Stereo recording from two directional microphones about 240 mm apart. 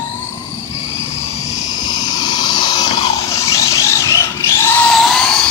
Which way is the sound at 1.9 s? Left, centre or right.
Centre.